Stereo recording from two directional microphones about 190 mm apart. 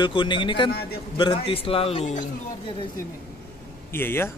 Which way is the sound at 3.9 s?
10° left (ahead or behind).